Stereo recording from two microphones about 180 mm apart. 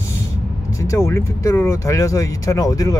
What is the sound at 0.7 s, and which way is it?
Speech, 15° left (ahead or behind).